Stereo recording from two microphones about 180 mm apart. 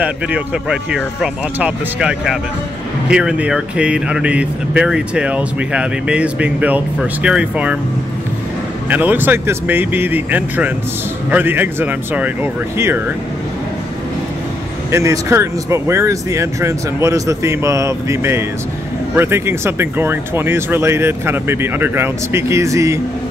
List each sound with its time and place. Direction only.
0.0 s speech: 5° right (ahead or behind)
8.8 s speech: 10° right (ahead or behind)
14.9 s speech: 15° right (ahead or behind)